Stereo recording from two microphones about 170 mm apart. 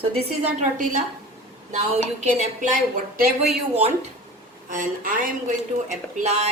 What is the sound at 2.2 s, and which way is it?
Speech, 45° right (ahead or behind).